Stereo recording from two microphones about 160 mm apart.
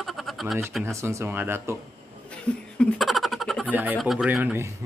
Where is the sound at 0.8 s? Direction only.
15° right (ahead or behind).